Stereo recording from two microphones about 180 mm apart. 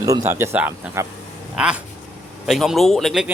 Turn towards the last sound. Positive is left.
turn(degrees=0)  # may be behind; listen again after turning